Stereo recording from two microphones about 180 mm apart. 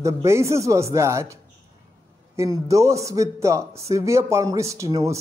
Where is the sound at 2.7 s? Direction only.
15° right (ahead or behind).